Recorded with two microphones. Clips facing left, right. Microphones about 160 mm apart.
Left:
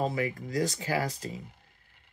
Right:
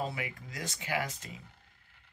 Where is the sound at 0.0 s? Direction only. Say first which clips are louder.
Left 7 dB; 40° left (ahead or behind).